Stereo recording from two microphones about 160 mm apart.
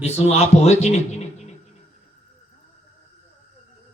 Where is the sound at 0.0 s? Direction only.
40° left (ahead or behind).